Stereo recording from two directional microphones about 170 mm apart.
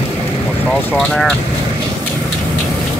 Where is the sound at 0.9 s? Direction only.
5° left (ahead or behind).